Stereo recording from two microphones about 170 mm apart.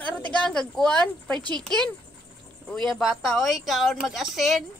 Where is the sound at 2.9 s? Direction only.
Centre (ahead or behind).